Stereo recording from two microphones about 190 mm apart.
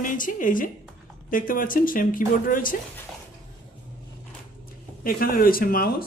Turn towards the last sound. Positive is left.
turn(degrees=50)  # may be behind; listen again after turning